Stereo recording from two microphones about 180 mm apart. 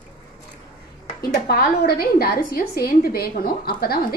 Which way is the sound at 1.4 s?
60° left (ahead or behind).